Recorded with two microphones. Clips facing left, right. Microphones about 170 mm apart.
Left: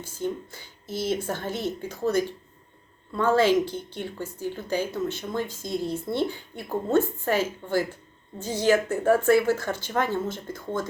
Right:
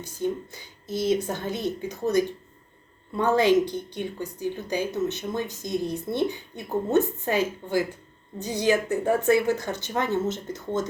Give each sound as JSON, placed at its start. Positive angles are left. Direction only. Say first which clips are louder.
{"t": 0.0, "sound": "a woman's voice", "louder": "right 2 dB", "side_deg": -15}